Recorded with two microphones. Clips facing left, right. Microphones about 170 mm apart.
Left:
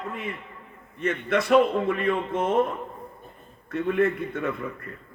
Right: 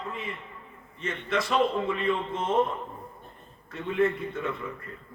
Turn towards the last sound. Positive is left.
turn(degrees=55)  # may be behind; listen again after turning